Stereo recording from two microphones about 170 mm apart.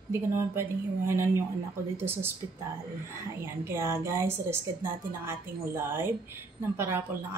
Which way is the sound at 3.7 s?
15° right (ahead or behind).